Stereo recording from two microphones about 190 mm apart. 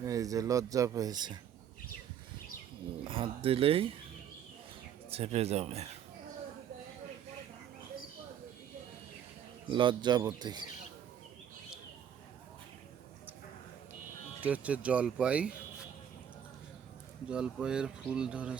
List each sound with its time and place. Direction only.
0.0 s speech: 15° right (ahead or behind)
3.1 s speech: 30° right (ahead or behind)
5.1 s speech: 35° right (ahead or behind)
9.6 s speech: 25° right (ahead or behind)
14.4 s speech: 5° right (ahead or behind)
17.2 s speech: 5° right (ahead or behind)